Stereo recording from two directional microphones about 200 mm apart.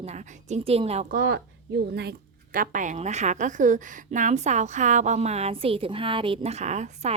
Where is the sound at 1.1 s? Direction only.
50° right (ahead or behind).